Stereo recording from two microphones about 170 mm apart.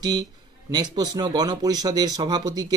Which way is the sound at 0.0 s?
25° right (ahead or behind).